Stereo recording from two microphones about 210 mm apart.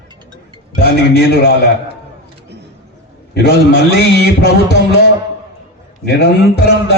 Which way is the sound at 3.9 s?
50° left (ahead or behind).